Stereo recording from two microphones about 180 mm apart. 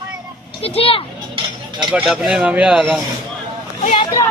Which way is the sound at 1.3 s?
25° right (ahead or behind).